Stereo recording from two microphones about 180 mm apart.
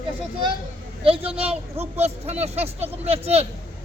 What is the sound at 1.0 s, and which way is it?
A man's voice, 30° right (ahead or behind).